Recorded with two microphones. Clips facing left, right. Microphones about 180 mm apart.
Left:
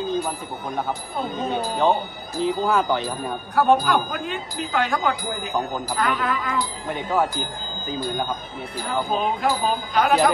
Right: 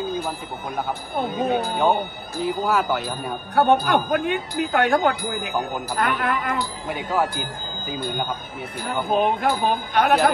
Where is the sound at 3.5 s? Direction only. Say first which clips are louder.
Right 1 dB; 60° right (ahead or behind).